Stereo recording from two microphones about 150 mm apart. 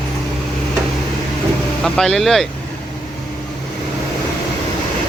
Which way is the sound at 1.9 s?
Centre (ahead or behind).